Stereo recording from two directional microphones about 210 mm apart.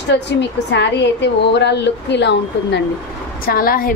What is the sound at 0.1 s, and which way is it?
A woman's voice, 55° left (ahead or behind).